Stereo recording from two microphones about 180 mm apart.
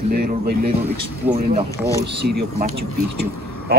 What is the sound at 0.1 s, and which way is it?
Speech, 60° right (ahead or behind).